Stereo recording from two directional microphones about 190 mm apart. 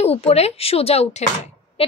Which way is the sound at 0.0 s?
30° left (ahead or behind).